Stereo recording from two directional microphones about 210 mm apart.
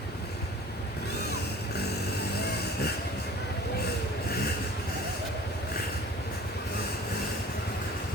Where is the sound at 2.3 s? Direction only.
50° left (ahead or behind).